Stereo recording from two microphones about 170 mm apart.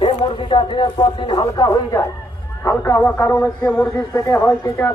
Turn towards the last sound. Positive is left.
turn(degrees=10)  # may be behind; listen again after turning